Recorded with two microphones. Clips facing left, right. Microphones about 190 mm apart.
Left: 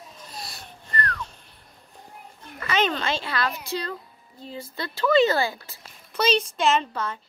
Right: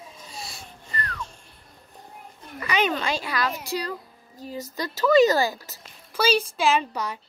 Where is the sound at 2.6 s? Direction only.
10° right (ahead or behind).